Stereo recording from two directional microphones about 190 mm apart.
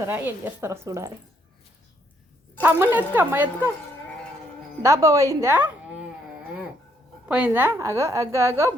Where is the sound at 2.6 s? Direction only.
10° right (ahead or behind).